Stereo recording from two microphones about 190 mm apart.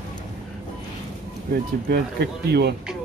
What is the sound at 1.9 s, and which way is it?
Speech, 60° right (ahead or behind).